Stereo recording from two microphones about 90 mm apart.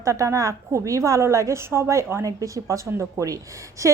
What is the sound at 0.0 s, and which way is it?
Speech, 35° right (ahead or behind).